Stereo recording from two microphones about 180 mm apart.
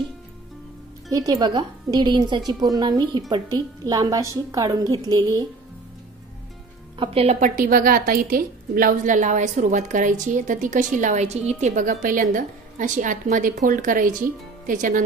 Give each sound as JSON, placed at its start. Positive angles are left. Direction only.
{"t": 1.1, "sound": "a woman's voice", "side_deg": -20}
{"t": 7.0, "sound": "a woman's voice", "side_deg": -35}